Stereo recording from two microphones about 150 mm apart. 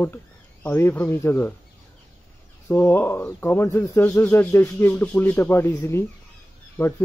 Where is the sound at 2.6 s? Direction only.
15° left (ahead or behind).